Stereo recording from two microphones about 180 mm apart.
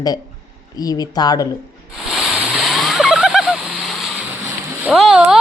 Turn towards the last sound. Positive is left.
turn(degrees=-5)  # may be behind; listen again after turning